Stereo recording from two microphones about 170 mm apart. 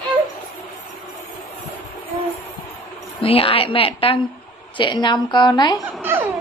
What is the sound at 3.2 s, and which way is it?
A woman's voice, 35° left (ahead or behind).